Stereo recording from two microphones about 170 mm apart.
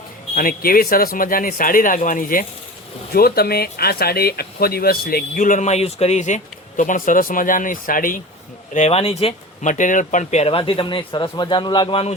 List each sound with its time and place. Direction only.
0.3 s speech: 60° left (ahead or behind)
8.7 s speech: 40° left (ahead or behind)